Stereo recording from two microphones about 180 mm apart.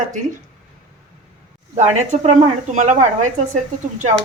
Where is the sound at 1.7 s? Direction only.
40° right (ahead or behind).